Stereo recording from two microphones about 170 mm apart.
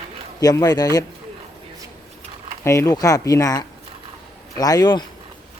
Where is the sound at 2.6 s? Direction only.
15° left (ahead or behind).